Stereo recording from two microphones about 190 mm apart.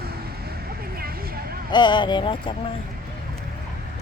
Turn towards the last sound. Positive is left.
turn(degrees=25)  # may be behind; listen again after turning